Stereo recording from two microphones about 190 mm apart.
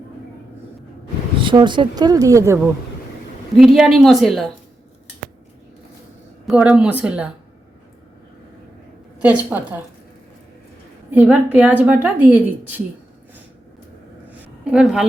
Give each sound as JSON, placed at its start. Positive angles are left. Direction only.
{"t": 1.4, "sound": "speech", "side_deg": -25}
{"t": 3.8, "sound": "speech", "side_deg": 0}
{"t": 6.4, "sound": "a woman's voice", "side_deg": -5}
{"t": 9.2, "sound": "a woman's voice", "side_deg": -10}
{"t": 11.1, "sound": "a woman's voice", "side_deg": -5}
{"t": 14.4, "sound": "a sound", "side_deg": -5}